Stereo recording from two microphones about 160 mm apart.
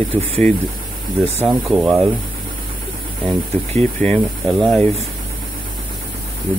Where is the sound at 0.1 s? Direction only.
10° left (ahead or behind).